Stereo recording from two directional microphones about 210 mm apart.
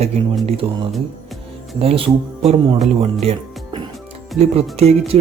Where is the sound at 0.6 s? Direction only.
25° right (ahead or behind).